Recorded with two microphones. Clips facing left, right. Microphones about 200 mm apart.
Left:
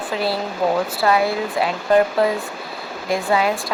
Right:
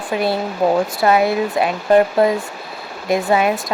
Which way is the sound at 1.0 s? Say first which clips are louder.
Right 3 dB; 20° right (ahead or behind).